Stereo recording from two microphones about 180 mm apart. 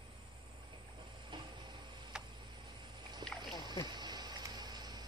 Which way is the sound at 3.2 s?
25° right (ahead or behind).